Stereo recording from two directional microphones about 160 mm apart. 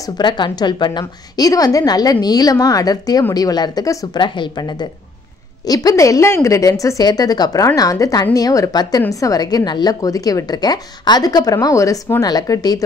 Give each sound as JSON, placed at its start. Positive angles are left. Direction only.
{"t": 0.0, "sound": "a woman's voice", "side_deg": 30}